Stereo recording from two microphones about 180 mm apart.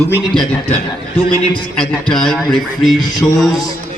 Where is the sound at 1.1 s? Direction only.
30° left (ahead or behind).